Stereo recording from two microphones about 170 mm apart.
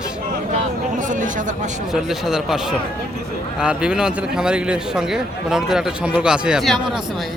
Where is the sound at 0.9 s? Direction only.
50° right (ahead or behind).